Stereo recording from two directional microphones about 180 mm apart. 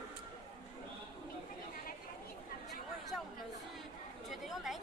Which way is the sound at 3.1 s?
5° right (ahead or behind).